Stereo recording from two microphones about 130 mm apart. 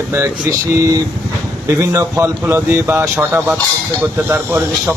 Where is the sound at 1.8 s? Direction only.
20° right (ahead or behind).